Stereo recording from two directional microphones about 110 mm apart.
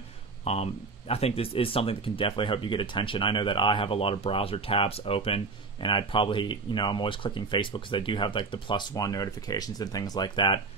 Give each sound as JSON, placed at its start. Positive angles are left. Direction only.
{"t": 0.5, "sound": "speech", "side_deg": 65}